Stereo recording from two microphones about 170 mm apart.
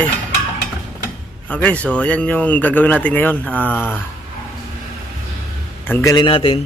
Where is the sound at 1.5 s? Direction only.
10° left (ahead or behind).